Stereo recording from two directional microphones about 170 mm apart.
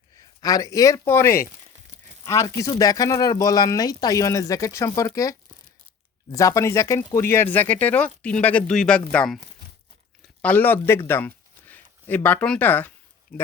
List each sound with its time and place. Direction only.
0.2 s speech: 20° left (ahead or behind); by 9.4 s 5° left (ahead or behind)
10.4 s speech: 10° left (ahead or behind)